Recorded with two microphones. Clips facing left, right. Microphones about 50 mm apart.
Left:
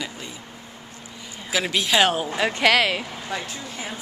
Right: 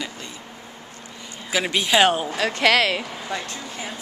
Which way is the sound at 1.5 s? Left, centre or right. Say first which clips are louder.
Right 1 dB; centre.